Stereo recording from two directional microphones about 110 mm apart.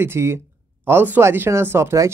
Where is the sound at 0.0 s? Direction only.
20° right (ahead or behind).